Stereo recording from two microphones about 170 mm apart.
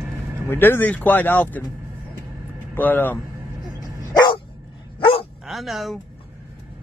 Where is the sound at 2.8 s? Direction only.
10° left (ahead or behind).